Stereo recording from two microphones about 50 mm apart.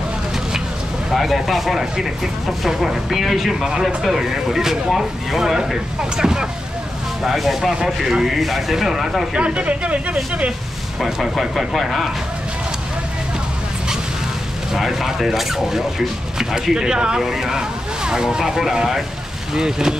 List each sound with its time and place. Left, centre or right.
1.1 s speech: centre
9.4 s speech: right
11.0 s speech: centre
14.7 s speech: centre